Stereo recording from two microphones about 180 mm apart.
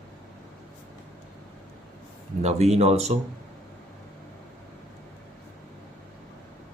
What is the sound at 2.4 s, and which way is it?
Speech, 35° right (ahead or behind).